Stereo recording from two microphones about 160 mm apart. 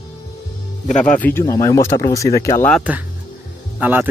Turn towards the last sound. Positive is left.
turn(degrees=-10)  # may be behind; listen again after turning